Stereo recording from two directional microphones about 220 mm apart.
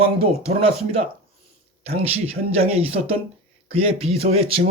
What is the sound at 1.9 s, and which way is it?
Speech, 25° right (ahead or behind).